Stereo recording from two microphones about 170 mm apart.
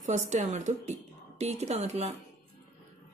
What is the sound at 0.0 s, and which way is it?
A woman's voice, 45° right (ahead or behind).